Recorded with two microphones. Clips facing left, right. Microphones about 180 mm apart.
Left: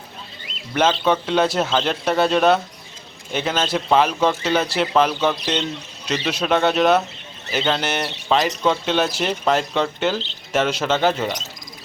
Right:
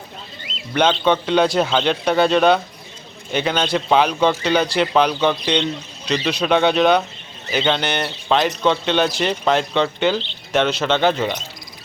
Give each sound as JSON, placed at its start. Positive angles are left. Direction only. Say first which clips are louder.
{"t": 0.7, "sound": "speech", "louder": "right 1 dB", "side_deg": 5}